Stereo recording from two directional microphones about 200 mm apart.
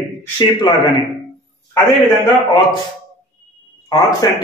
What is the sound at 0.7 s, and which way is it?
Speech, 20° left (ahead or behind).